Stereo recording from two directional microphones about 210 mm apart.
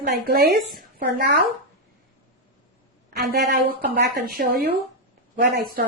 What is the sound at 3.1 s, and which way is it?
A woman's voice, 50° right (ahead or behind).